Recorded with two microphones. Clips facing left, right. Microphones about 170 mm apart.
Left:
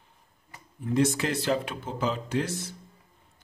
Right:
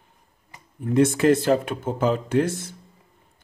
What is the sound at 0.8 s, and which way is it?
A man's voice, 55° right (ahead or behind).